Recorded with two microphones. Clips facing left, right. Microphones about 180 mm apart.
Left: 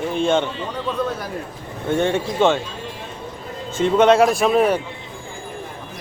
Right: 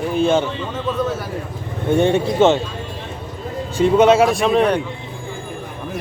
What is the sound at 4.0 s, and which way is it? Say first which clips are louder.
Speech: even; centre (ahead or behind).